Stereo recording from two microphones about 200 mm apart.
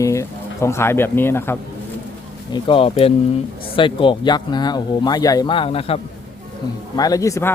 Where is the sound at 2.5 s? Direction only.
25° left (ahead or behind).